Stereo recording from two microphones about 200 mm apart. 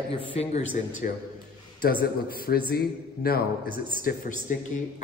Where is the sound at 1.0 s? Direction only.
45° left (ahead or behind).